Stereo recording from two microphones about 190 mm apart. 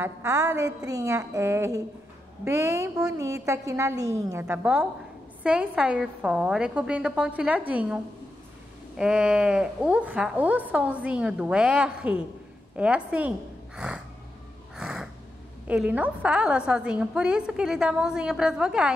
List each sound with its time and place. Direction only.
0.0 s a woman's voice: 15° right (ahead or behind)
13.7 s a sound: 5° right (ahead or behind)
14.8 s crow: 5° right (ahead or behind)
15.6 s a woman's voice: 5° right (ahead or behind)